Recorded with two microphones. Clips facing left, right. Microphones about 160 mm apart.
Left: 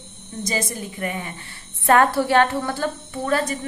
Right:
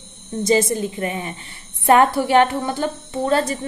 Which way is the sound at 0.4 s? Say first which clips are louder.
Right 9 dB; 25° right (ahead or behind).